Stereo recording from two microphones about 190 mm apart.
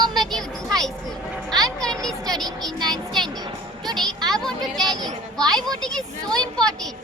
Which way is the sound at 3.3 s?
20° right (ahead or behind).